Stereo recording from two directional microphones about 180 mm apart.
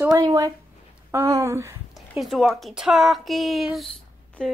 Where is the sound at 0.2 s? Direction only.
20° right (ahead or behind).